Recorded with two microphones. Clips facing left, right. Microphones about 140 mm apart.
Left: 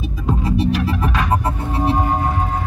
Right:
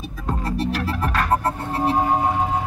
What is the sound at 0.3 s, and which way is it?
Music, 10° left (ahead or behind).